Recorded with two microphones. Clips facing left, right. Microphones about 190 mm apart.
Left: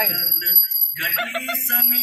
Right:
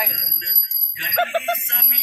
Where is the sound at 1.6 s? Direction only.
55° left (ahead or behind).